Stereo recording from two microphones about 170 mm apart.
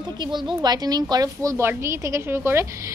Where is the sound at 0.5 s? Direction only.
25° right (ahead or behind).